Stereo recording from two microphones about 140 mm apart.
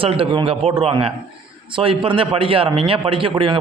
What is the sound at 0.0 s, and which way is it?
A man's voice, 40° right (ahead or behind).